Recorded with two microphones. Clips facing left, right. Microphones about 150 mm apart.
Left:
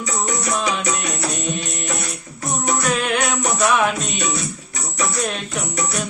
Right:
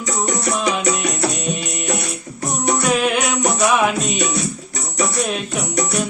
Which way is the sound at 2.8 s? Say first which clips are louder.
Right 3 dB; 5° right (ahead or behind).